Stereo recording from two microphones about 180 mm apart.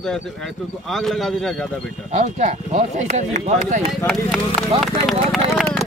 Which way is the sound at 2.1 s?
40° right (ahead or behind).